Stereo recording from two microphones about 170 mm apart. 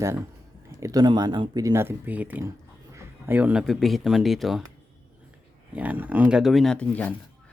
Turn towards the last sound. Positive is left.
turn(degrees=10)  # may be behind; listen again after turning